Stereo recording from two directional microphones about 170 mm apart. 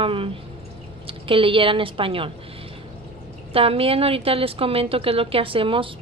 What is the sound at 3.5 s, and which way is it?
A woman's voice, 35° right (ahead or behind).